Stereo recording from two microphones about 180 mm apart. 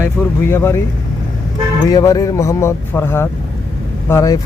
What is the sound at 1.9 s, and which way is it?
Speech, 20° left (ahead or behind).